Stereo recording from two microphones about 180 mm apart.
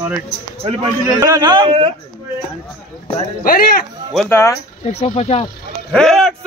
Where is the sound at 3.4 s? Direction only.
50° left (ahead or behind).